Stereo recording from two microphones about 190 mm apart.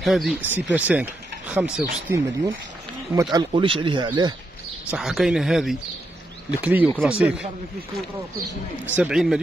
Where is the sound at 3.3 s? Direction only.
25° right (ahead or behind).